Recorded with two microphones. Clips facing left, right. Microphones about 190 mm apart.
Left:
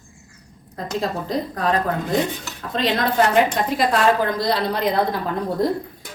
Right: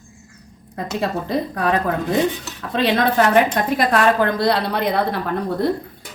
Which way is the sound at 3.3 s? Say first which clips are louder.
Right 2 dB; 55° right (ahead or behind).